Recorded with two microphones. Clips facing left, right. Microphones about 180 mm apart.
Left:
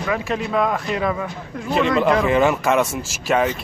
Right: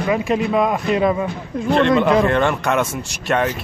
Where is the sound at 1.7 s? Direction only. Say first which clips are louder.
Right 3 dB; centre (ahead or behind).